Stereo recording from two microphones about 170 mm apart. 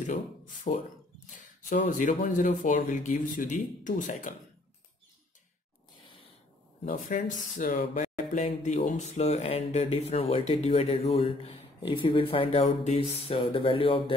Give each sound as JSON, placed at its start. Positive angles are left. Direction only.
{"t": 0.7, "sound": "speech", "side_deg": 40}
{"t": 1.9, "sound": "speech", "side_deg": 50}
{"t": 6.8, "sound": "speech", "side_deg": 50}